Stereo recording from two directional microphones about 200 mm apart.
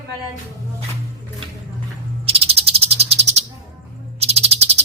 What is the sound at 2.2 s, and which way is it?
Frog, 30° right (ahead or behind).